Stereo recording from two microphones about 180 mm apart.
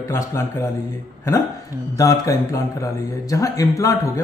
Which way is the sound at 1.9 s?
15° left (ahead or behind).